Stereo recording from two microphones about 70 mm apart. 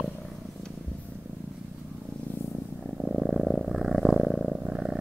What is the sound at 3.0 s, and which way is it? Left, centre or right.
Purr, centre.